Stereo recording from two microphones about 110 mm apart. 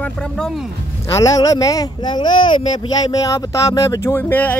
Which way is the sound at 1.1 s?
30° left (ahead or behind).